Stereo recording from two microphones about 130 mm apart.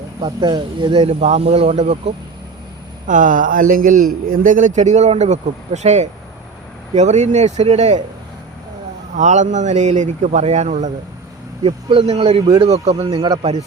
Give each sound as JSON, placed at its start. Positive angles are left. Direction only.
{"t": 0.2, "sound": "speech", "side_deg": -35}
{"t": 3.1, "sound": "speech", "side_deg": -80}
{"t": 9.1, "sound": "speech", "side_deg": -70}
{"t": 11.6, "sound": "speech", "side_deg": -45}
{"t": 13.1, "sound": "speech", "side_deg": -30}
{"t": 13.4, "sound": "speech", "side_deg": -55}